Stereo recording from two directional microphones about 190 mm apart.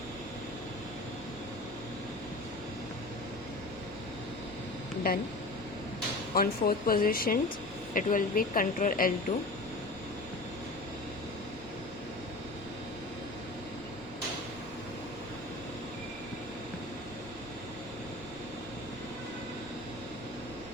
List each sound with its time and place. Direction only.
5.1 s speech: 55° left (ahead or behind)
6.3 s speech: 50° left (ahead or behind)